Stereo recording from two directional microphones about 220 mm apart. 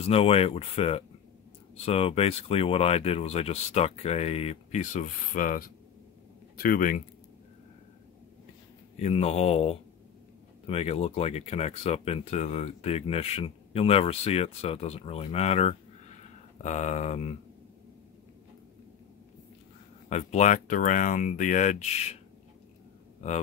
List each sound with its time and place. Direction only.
0.0 s speech: 25° left (ahead or behind)
8.9 s speech: 30° left (ahead or behind)
20.1 s speech: 30° left (ahead or behind)